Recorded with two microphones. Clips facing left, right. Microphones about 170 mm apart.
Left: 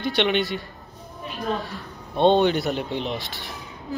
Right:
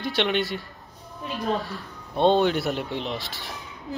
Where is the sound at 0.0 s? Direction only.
Centre (ahead or behind).